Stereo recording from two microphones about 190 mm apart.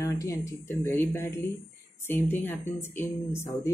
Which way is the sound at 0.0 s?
15° left (ahead or behind).